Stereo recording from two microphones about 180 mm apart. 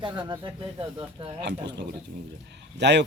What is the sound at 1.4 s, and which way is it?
Speech, 70° right (ahead or behind).